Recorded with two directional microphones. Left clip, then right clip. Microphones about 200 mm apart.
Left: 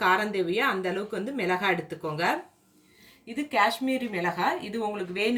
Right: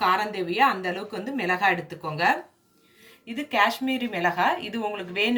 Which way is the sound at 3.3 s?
25° right (ahead or behind).